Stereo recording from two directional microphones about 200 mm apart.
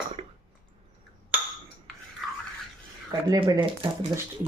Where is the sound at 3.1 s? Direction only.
20° right (ahead or behind).